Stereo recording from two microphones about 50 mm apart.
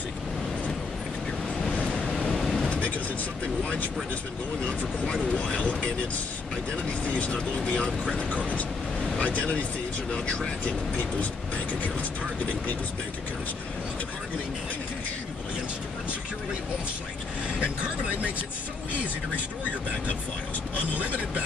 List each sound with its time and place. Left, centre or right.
1.7 s vehicle: left
2.0 s vehicle: centre
2.7 s vehicle: left
4.6 s speech: left
17.6 s speech: right